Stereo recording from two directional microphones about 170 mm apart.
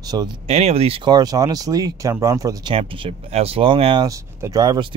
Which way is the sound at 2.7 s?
30° right (ahead or behind).